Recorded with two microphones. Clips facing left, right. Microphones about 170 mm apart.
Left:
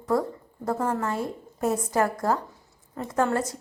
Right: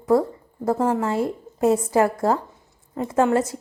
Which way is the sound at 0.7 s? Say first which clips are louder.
Right 5 dB; 15° right (ahead or behind).